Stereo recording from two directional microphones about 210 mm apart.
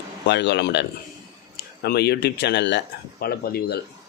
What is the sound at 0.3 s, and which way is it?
Speech, 55° left (ahead or behind).